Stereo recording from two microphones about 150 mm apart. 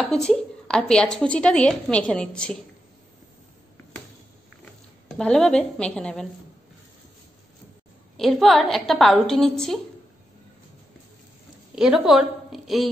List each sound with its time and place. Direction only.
0.0 s a woman's voice: 5° left (ahead or behind)
5.1 s a woman's voice: 5° left (ahead or behind)
8.2 s a woman's voice: centre (ahead or behind)
11.7 s a woman's voice: 5° right (ahead or behind)